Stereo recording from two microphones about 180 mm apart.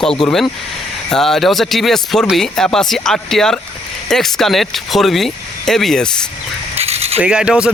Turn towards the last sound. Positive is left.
turn(degrees=-5)  # may be behind; listen again after turning